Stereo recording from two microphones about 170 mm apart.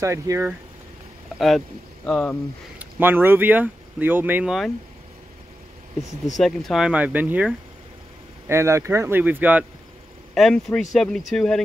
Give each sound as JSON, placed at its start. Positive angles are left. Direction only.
{"t": 0.0, "sound": "speech", "side_deg": -15}
{"t": 2.0, "sound": "speech", "side_deg": 5}
{"t": 2.8, "sound": "speech", "side_deg": -10}
{"t": 6.3, "sound": "speech", "side_deg": 0}
{"t": 10.3, "sound": "speech", "side_deg": 0}